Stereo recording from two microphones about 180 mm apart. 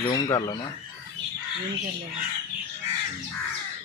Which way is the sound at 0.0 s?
20° left (ahead or behind).